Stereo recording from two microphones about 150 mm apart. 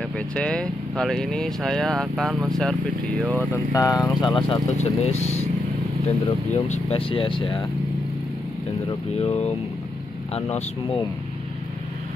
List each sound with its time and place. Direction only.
0.3 s speech: 5° left (ahead or behind)
3.7 s speech: 25° left (ahead or behind)
4.4 s speech: 45° left (ahead or behind)
6.5 s speech: 45° left (ahead or behind)
8.8 s speech: 45° left (ahead or behind)